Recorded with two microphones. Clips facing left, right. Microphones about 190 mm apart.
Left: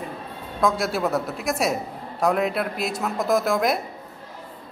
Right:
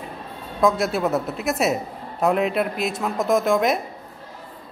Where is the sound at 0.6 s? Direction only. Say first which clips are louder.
Right 3 dB; centre (ahead or behind).